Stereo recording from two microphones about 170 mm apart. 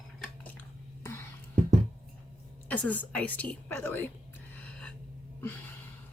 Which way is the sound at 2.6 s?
10° left (ahead or behind).